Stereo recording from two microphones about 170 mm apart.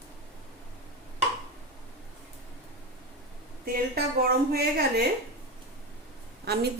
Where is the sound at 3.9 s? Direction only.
65° right (ahead or behind).